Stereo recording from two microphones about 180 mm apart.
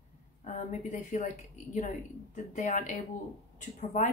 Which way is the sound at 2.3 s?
45° left (ahead or behind).